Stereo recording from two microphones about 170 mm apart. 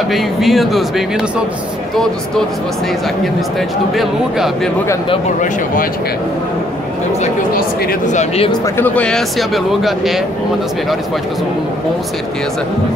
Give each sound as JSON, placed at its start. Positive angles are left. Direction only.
{"t": 0.1, "sound": "speech", "side_deg": 0}
{"t": 3.9, "sound": "speech", "side_deg": 0}
{"t": 8.1, "sound": "speech", "side_deg": 40}
{"t": 8.5, "sound": "speech", "side_deg": 15}